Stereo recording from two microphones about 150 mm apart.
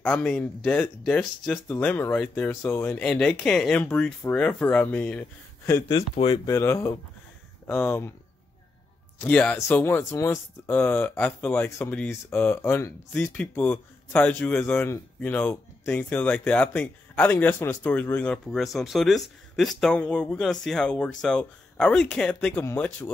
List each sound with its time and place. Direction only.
0.0 s speech: 5° left (ahead or behind)
5.9 s speech: 40° left (ahead or behind)
6.4 s speech: 20° left (ahead or behind)
9.2 s speech: 10° left (ahead or behind)